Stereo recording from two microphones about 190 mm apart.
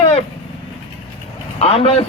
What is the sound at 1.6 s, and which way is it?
Speech, 30° left (ahead or behind).